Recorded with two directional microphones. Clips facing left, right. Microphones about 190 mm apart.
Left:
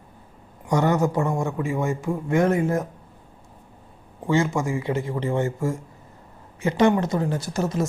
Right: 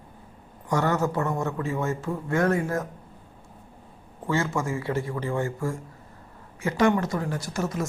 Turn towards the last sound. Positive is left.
turn(degrees=30)  # may be behind; listen again after turning